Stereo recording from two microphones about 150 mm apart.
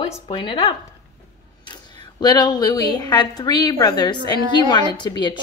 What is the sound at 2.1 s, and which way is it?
A woman's voice, 30° left (ahead or behind).